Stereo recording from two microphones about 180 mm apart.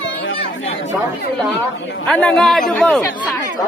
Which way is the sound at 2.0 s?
5° left (ahead or behind).